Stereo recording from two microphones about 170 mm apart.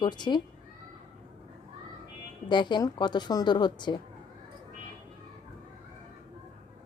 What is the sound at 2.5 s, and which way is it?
A woman's voice, 25° left (ahead or behind).